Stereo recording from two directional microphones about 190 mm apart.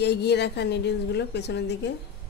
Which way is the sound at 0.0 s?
60° left (ahead or behind).